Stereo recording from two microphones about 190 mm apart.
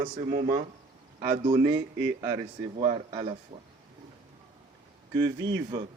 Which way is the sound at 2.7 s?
25° right (ahead or behind).